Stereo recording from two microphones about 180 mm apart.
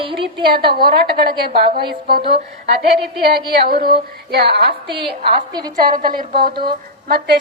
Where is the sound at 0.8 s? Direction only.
60° right (ahead or behind).